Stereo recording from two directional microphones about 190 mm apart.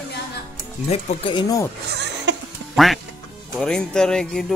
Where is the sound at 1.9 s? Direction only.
65° right (ahead or behind).